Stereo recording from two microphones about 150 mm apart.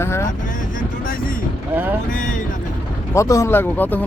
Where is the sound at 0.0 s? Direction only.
15° left (ahead or behind).